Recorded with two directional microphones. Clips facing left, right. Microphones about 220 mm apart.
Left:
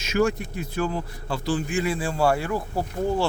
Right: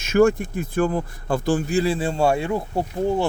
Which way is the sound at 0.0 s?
50° right (ahead or behind).